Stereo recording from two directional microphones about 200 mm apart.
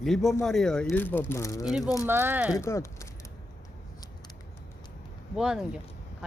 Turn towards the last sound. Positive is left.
turn(degrees=-5)  # may be behind; listen again after turning